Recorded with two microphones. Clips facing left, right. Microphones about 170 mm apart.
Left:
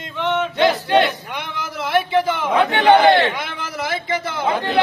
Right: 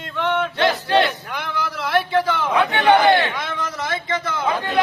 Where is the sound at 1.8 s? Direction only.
25° left (ahead or behind).